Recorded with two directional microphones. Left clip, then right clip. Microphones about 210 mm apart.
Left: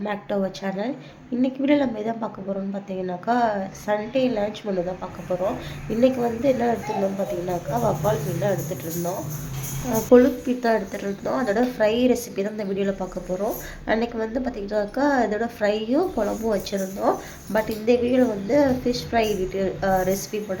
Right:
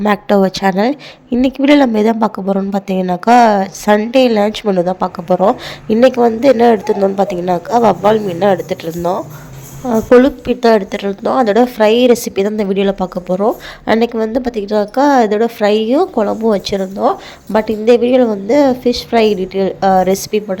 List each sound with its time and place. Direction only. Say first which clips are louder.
0.0 s a woman's voice: right 14 dB; 45° right (ahead or behind)